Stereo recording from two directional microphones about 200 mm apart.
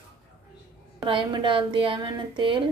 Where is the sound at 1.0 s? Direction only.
25° right (ahead or behind).